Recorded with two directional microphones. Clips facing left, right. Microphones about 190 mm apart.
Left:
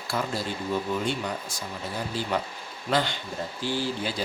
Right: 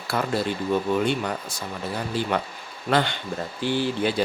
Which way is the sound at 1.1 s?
60° right (ahead or behind).